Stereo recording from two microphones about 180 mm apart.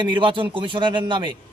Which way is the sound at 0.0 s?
25° right (ahead or behind).